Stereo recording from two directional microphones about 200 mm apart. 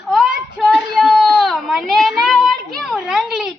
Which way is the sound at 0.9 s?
Centre (ahead or behind).